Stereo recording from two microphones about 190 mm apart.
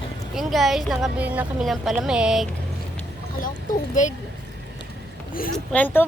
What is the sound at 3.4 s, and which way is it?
Speech, 45° left (ahead or behind).